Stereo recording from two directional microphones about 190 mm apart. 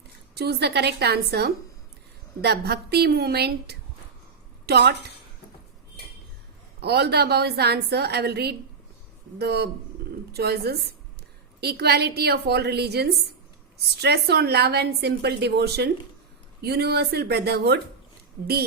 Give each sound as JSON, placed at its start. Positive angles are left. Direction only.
{"t": 0.3, "sound": "a woman's voice", "side_deg": -60}
{"t": 6.7, "sound": "a woman's voice", "side_deg": -55}